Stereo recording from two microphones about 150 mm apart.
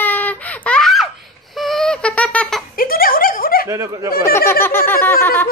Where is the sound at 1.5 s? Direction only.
Centre (ahead or behind).